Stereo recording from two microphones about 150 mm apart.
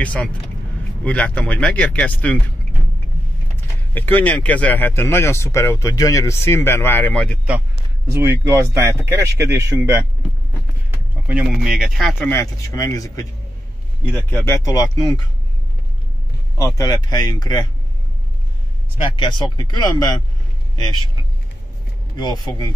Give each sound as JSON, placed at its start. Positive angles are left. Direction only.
{"t": 0.0, "sound": "speech", "side_deg": 10}
{"t": 3.5, "sound": "speech", "side_deg": 15}
{"t": 8.1, "sound": "speech", "side_deg": -20}
{"t": 11.2, "sound": "speech", "side_deg": -5}
{"t": 12.2, "sound": "speech", "side_deg": 15}
{"t": 16.5, "sound": "speech", "side_deg": 20}
{"t": 19.0, "sound": "speech", "side_deg": 30}
{"t": 22.1, "sound": "speech", "side_deg": 30}